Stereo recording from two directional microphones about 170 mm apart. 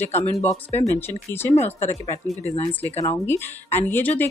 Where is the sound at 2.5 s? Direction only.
35° left (ahead or behind).